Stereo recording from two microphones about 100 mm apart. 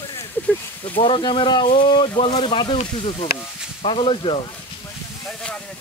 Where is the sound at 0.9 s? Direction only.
60° left (ahead or behind).